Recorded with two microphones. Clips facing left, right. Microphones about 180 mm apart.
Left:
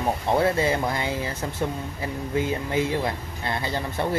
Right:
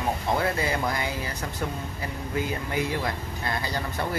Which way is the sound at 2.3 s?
25° left (ahead or behind).